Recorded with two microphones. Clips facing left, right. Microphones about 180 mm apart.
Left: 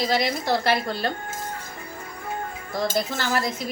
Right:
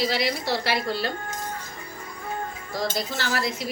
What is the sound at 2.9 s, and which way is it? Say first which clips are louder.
Speech: left 3 dB; 50° left (ahead or behind).